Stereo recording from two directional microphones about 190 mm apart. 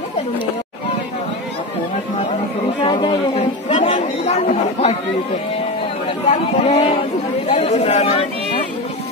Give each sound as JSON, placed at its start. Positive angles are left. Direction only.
{"t": 2.8, "sound": "chatter", "side_deg": 30}
{"t": 6.3, "sound": "speech", "side_deg": 35}